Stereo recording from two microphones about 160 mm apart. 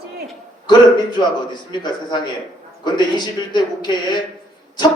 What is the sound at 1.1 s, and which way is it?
A man's voice, 30° left (ahead or behind).